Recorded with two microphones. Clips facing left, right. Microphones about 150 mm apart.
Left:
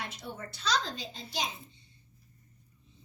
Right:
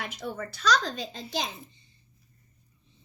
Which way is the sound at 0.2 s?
90° right.